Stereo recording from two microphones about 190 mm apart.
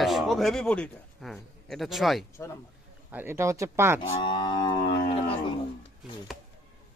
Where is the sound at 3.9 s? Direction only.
25° left (ahead or behind).